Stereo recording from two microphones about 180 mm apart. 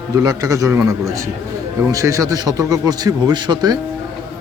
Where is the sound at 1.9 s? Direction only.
15° right (ahead or behind).